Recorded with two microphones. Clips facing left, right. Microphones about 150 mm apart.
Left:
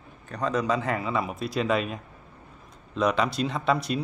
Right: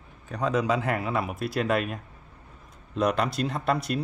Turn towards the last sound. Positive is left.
turn(degrees=0)  # may be behind; listen again after turning